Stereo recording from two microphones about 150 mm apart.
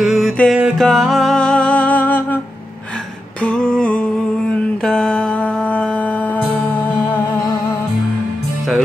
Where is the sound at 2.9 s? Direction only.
5° left (ahead or behind).